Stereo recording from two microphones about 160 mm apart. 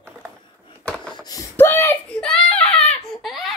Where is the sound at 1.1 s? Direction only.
25° left (ahead or behind).